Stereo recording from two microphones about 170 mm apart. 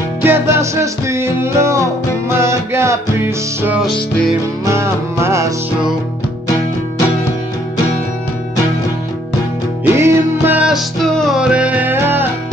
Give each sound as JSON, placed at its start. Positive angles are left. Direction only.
{"t": 0.2, "sound": "music", "side_deg": -15}
{"t": 9.9, "sound": "music", "side_deg": -15}